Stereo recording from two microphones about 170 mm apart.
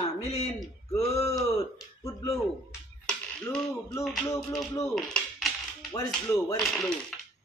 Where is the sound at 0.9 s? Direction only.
40° left (ahead or behind).